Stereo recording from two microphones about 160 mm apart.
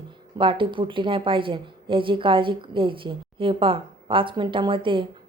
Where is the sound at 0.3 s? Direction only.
30° right (ahead or behind).